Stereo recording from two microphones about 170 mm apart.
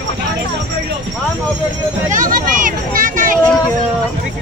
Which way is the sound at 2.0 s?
50° right (ahead or behind).